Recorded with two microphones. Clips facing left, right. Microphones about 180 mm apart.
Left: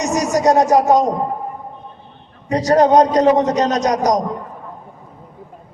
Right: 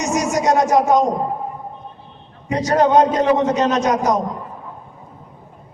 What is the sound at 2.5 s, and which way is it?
A man's voice, 35° left (ahead or behind).